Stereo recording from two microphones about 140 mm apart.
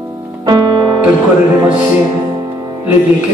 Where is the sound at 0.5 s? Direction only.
30° right (ahead or behind).